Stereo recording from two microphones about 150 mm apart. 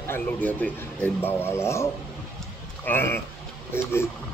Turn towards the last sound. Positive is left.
turn(degrees=15)  # may be behind; listen again after turning